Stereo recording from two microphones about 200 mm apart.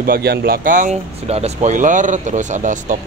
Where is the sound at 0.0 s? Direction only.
50° right (ahead or behind).